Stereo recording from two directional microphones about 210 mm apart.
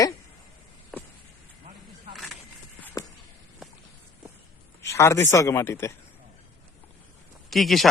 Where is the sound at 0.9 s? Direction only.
Centre (ahead or behind).